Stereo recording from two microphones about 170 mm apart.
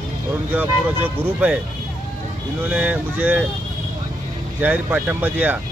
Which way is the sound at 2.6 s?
10° right (ahead or behind).